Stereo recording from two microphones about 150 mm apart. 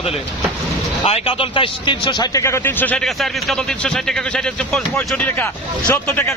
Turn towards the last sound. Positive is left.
turn(degrees=15)  # may be behind; listen again after turning